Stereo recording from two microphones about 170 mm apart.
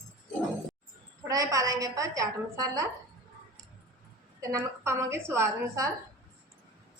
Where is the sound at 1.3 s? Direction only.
20° right (ahead or behind).